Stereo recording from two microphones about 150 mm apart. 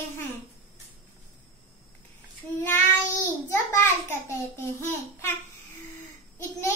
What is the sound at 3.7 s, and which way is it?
Babbling, 15° left (ahead or behind).